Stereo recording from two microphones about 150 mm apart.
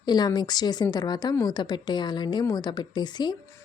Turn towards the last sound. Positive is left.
turn(degrees=30)  # may be behind; listen again after turning